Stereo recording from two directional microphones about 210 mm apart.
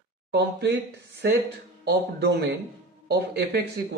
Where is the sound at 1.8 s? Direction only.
50° right (ahead or behind).